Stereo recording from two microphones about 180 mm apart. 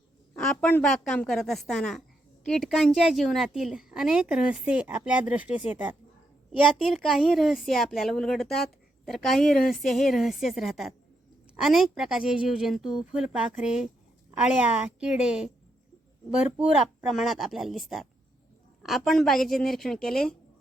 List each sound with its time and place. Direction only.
0.3 s a woman's voice: 5° left (ahead or behind)
15.0 s a woman's voice: 5° right (ahead or behind)
17.1 s a woman's voice: centre (ahead or behind)